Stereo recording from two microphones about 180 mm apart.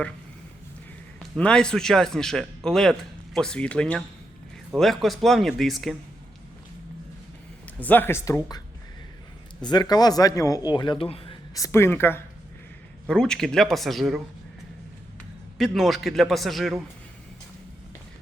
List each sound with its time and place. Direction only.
1.4 s speech: 5° left (ahead or behind)
7.8 s speech: 10° left (ahead or behind)
9.6 s speech: 25° left (ahead or behind)
11.5 s speech: 15° left (ahead or behind); by 14.2 s centre (ahead or behind)
15.5 s speech: centre (ahead or behind)